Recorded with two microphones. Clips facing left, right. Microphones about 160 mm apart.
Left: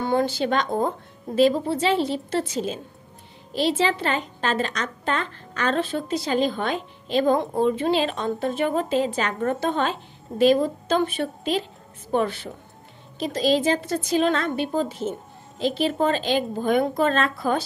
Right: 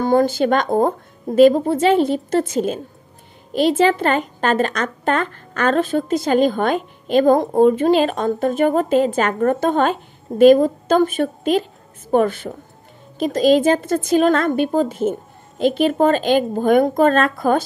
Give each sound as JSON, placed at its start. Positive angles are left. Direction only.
{"t": 0.0, "sound": "a woman's voice", "side_deg": -45}